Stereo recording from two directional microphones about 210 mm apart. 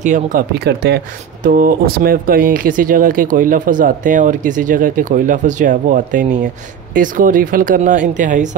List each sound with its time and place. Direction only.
0.0 s speech: 40° right (ahead or behind)